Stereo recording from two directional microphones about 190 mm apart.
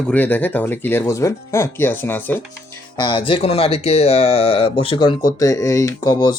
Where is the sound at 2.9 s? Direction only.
25° left (ahead or behind).